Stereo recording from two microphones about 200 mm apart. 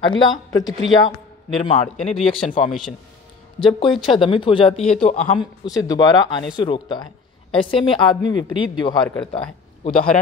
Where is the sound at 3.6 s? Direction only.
25° left (ahead or behind).